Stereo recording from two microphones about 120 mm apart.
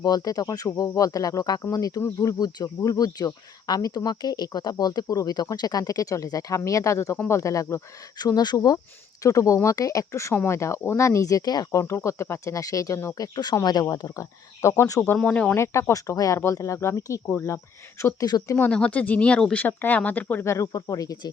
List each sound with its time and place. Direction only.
0.0 s speech: 30° left (ahead or behind)
15.1 s speech: 10° left (ahead or behind)
15.5 s speech: 20° left (ahead or behind)
18.0 s speech: 30° left (ahead or behind)
18.7 s speech: 10° left (ahead or behind); by 21.2 s 30° left (ahead or behind)